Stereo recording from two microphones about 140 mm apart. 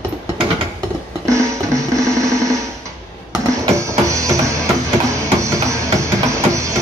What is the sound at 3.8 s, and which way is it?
Music, 20° right (ahead or behind).